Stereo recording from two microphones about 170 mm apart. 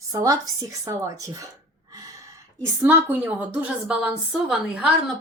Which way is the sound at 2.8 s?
15° right (ahead or behind).